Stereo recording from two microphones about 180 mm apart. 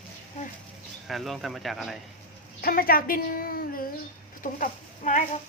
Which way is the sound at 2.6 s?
55° left (ahead or behind).